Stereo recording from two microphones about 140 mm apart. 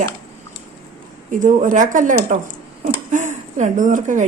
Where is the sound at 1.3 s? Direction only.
65° right (ahead or behind).